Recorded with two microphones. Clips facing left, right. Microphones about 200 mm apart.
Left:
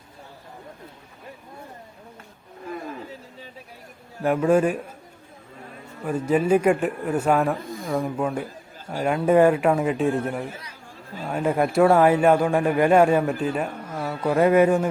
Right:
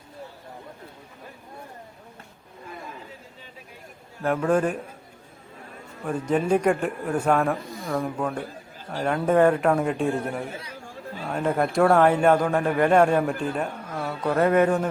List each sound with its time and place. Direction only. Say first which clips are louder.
4.2 s speech: left 3 dB; 10° left (ahead or behind)
6.1 s speech: left 2 dB; 5° left (ahead or behind)
7.6 s a sound: left 3 dB; 50° left (ahead or behind)
7.9 s speech: left 2 dB; 5° left (ahead or behind)